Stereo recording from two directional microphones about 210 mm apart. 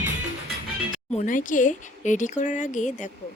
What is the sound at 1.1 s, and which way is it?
Speech, 40° left (ahead or behind).